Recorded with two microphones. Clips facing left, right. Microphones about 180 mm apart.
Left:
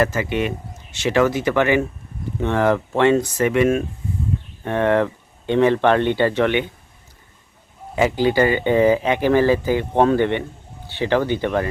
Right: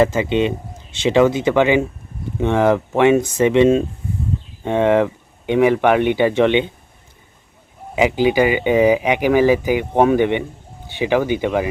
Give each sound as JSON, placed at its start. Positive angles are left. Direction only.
{"t": 0.0, "sound": "speech", "side_deg": -20}
{"t": 7.9, "sound": "speech", "side_deg": -15}